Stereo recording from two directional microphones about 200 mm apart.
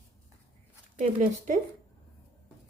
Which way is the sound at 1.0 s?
40° right (ahead or behind).